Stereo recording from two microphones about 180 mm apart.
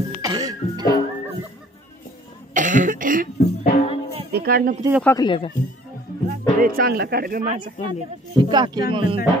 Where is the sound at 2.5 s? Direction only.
45° right (ahead or behind).